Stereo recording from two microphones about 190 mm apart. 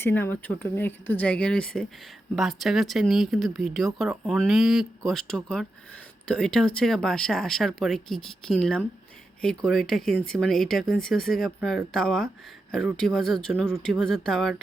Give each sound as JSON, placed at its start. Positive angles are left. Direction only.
{"t": 0.0, "sound": "speech", "side_deg": 10}